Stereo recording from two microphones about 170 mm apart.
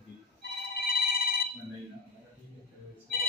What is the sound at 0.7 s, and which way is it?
Telephone bell ringing, 65° left (ahead or behind).